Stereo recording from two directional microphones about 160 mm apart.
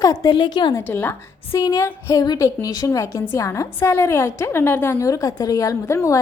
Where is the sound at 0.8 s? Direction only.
15° left (ahead or behind).